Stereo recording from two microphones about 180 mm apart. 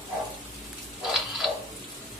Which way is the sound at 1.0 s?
Centre (ahead or behind).